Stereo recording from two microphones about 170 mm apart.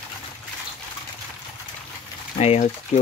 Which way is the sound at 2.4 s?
40° left (ahead or behind).